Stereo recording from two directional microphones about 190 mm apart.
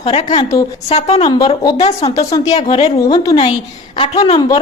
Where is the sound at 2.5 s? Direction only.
30° left (ahead or behind).